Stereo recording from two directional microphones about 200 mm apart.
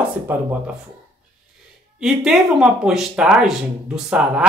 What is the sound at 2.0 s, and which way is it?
Speech, centre (ahead or behind).